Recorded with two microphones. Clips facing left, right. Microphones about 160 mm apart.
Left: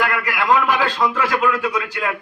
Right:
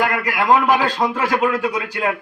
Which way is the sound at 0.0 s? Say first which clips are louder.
Right 2 dB; 35° right (ahead or behind).